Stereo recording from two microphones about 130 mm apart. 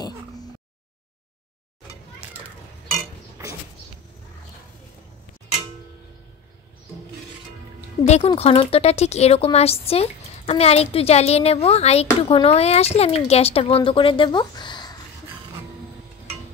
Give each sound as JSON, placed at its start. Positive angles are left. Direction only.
{"t": 8.0, "sound": "speech", "side_deg": 55}